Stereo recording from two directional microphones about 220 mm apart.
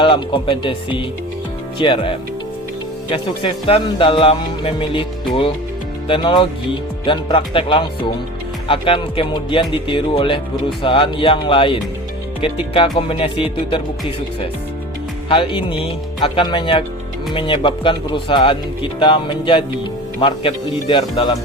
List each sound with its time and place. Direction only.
0.0 s speech: 20° left (ahead or behind)
15.3 s speech: 25° left (ahead or behind)